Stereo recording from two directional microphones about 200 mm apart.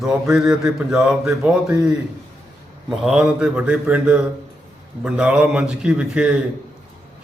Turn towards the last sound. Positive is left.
turn(degrees=-5)  # may be behind; listen again after turning